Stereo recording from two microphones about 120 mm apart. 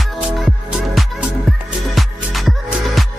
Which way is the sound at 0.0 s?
Centre (ahead or behind).